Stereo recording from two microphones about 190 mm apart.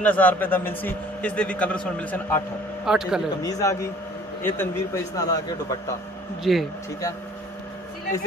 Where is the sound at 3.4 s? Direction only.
20° left (ahead or behind).